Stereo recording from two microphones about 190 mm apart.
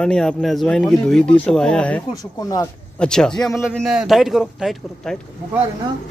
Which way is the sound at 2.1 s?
20° left (ahead or behind).